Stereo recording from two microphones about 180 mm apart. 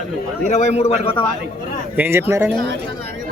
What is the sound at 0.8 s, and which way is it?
Speech, 30° left (ahead or behind).